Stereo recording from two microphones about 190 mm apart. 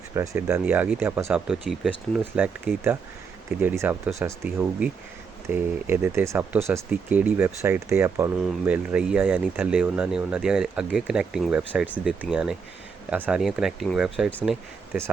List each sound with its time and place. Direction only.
0.1 s speech: 15° right (ahead or behind)